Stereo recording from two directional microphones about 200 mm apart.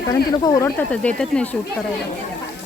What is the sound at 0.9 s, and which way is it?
Speech, 5° left (ahead or behind).